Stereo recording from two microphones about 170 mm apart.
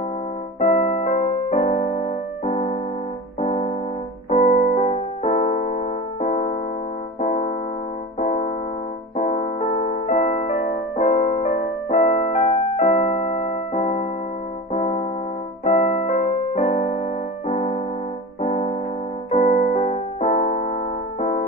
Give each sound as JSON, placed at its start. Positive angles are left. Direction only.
{"t": 0.6, "sound": "keyboard", "side_deg": 45}
{"t": 4.3, "sound": "piano", "side_deg": 35}
{"t": 6.2, "sound": "keyboard", "side_deg": 45}
{"t": 14.7, "sound": "piano", "side_deg": 40}
{"t": 15.6, "sound": "keyboard", "side_deg": 45}
{"t": 17.5, "sound": "piano", "side_deg": 35}
{"t": 19.3, "sound": "keyboard", "side_deg": 35}